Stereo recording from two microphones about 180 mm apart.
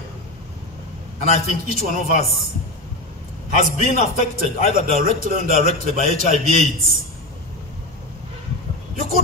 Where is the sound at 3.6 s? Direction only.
40° left (ahead or behind).